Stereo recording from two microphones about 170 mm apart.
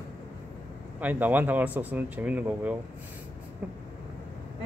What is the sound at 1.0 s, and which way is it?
Speech, 10° right (ahead or behind).